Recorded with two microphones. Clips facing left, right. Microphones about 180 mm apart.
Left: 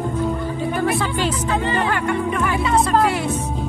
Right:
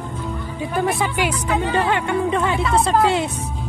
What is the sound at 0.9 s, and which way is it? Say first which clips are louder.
Music: left 1 dB; 15° right (ahead or behind).